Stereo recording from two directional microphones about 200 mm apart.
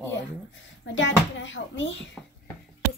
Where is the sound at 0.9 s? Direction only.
70° left (ahead or behind).